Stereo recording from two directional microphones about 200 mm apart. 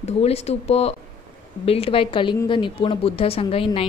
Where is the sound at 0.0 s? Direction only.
30° left (ahead or behind).